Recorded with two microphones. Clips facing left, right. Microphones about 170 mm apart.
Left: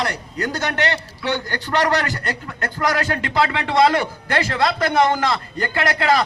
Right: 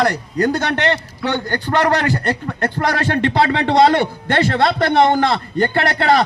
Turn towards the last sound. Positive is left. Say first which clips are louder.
# right 4 dB
turn(degrees=-35)  # may be behind; listen again after turning